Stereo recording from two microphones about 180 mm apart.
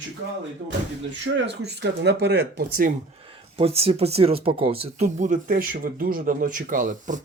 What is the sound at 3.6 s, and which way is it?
Speech, 35° right (ahead or behind).